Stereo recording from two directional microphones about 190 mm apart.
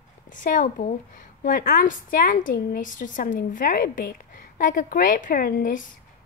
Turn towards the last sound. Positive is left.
turn(degrees=45)  # may be behind; listen again after turning